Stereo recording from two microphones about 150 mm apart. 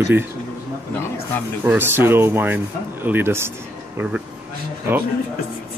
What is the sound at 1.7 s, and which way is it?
Speech, 15° right (ahead or behind).